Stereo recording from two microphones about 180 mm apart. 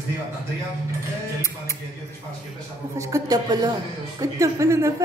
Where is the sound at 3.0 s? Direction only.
20° right (ahead or behind).